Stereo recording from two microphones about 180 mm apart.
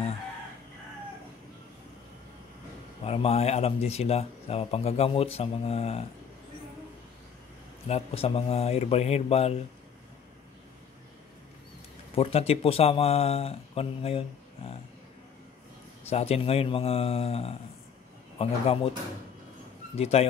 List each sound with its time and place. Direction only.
3.0 s speech: 35° left (ahead or behind)
7.9 s speech: 35° left (ahead or behind)
12.2 s speech: 35° left (ahead or behind)
16.1 s speech: 35° left (ahead or behind)
20.0 s speech: 35° left (ahead or behind)